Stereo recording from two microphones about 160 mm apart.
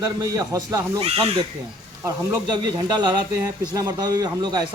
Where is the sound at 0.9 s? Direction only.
35° right (ahead or behind).